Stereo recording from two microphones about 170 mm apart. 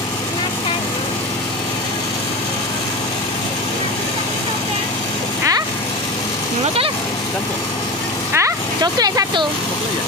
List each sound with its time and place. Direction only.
8.3 s vehicle: 15° right (ahead or behind)